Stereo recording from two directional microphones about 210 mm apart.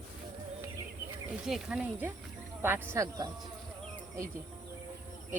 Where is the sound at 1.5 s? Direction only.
Centre (ahead or behind).